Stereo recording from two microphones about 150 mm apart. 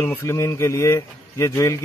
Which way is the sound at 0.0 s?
15° left (ahead or behind).